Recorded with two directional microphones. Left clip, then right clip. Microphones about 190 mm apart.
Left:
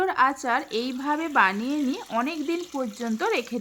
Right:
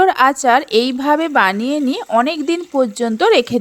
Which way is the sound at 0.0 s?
40° right (ahead or behind).